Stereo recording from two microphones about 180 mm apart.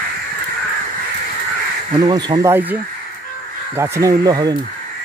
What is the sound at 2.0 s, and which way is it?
Speech, 25° right (ahead or behind).